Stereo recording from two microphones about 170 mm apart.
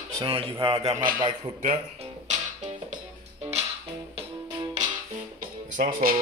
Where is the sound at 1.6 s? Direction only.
45° right (ahead or behind).